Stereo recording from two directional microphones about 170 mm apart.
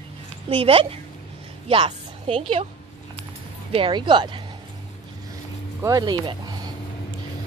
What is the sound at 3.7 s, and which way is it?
Speech, 30° right (ahead or behind).